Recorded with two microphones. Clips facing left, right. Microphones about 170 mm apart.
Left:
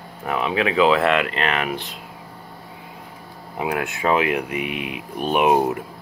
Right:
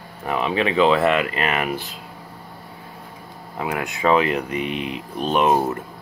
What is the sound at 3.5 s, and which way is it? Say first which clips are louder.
Speech: left 2 dB; 10° left (ahead or behind).